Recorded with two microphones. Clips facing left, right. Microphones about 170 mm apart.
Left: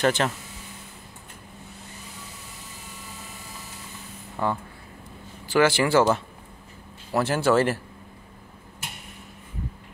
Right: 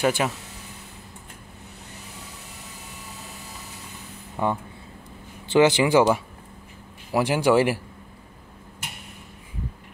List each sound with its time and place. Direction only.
0.0 s speech: 10° right (ahead or behind)
4.4 s speech: 15° right (ahead or behind)